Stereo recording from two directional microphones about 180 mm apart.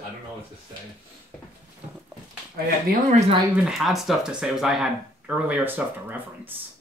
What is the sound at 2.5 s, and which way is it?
Speech, 55° right (ahead or behind).